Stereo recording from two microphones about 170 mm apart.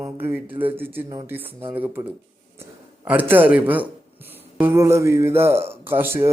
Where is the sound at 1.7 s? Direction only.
10° right (ahead or behind).